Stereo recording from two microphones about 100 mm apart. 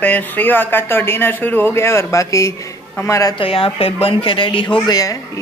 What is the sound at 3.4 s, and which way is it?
Speech, 65° left (ahead or behind).